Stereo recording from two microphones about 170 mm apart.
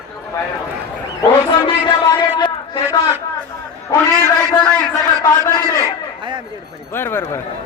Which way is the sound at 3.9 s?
20° left (ahead or behind).